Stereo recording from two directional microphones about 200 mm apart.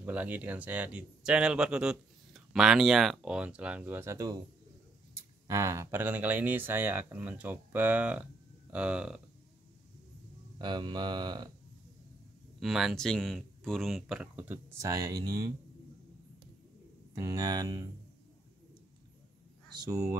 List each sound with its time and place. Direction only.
0.0 s speech: 10° right (ahead or behind)
5.5 s speech: 15° right (ahead or behind)
10.6 s speech: 20° right (ahead or behind)
12.5 s speech: centre (ahead or behind); by 15.5 s 20° right (ahead or behind)
17.1 s speech: 15° right (ahead or behind)
19.7 s a sound: 20° right (ahead or behind)